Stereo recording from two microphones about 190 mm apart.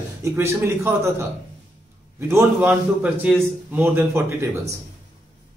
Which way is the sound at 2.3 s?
10° right (ahead or behind).